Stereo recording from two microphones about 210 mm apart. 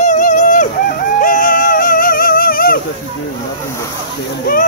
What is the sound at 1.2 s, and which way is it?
Music, 40° left (ahead or behind).